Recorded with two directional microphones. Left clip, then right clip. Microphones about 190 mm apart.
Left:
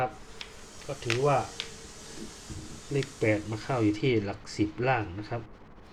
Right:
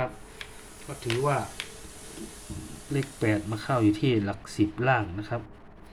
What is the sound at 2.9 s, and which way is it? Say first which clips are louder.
Speech: even; 25° right (ahead or behind).